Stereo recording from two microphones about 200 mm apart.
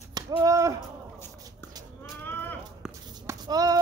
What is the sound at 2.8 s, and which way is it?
Shuffle, 5° right (ahead or behind).